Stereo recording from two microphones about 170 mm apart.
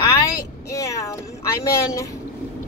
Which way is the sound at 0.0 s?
20° left (ahead or behind).